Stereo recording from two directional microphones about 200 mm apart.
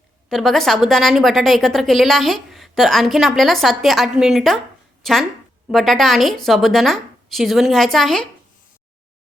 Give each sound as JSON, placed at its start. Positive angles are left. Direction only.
{"t": 0.3, "sound": "a woman's voice", "side_deg": 0}